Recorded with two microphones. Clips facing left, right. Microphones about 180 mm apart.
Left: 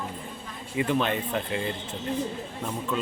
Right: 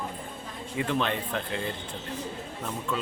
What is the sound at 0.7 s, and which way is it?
Speech, 5° left (ahead or behind).